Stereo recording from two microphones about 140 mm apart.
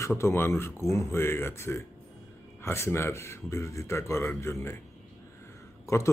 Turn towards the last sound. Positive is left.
turn(degrees=20)  # may be behind; listen again after turning